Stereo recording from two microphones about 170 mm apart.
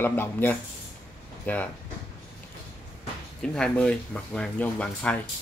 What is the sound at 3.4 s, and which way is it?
Speech, 5° left (ahead or behind).